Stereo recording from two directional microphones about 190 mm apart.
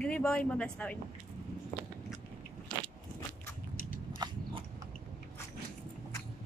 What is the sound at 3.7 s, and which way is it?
Biting, 50° left (ahead or behind).